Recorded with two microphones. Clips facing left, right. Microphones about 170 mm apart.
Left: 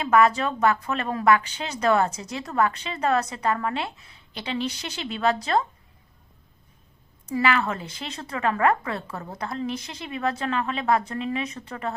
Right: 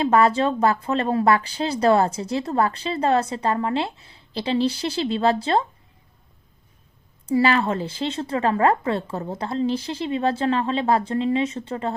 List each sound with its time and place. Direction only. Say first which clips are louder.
0.0 s a woman's voice: right 2 dB; 30° right (ahead or behind)
7.3 s a woman's voice: right 4 dB; 30° right (ahead or behind)